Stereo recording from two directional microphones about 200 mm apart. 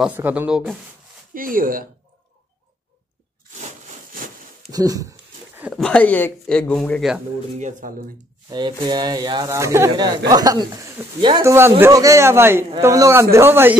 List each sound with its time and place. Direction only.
0.0 s speech: 10° right (ahead or behind)
1.3 s speech: 45° right (ahead or behind)
4.7 s a man's voice: 20° right (ahead or behind)
5.6 s speech: centre (ahead or behind)
7.5 s speech: 35° right (ahead or behind)
8.5 s a man's voice: 20° right (ahead or behind)